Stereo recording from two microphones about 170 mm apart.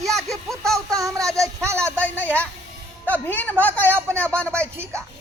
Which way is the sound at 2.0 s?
10° left (ahead or behind).